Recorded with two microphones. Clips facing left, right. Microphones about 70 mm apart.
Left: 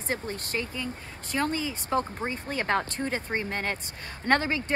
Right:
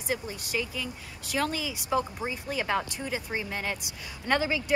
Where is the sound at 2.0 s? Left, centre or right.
Left.